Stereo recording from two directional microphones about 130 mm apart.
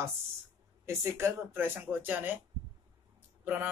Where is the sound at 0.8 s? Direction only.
20° right (ahead or behind).